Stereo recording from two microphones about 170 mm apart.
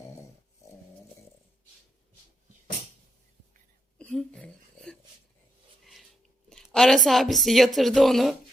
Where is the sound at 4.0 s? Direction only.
5° left (ahead or behind).